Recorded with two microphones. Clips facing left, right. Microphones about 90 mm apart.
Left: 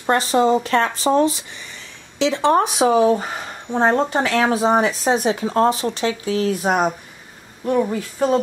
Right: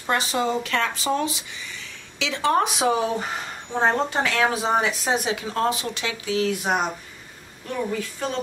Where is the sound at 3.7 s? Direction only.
15° left (ahead or behind).